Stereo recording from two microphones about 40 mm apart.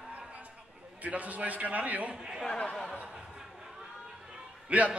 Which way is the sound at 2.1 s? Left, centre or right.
Centre.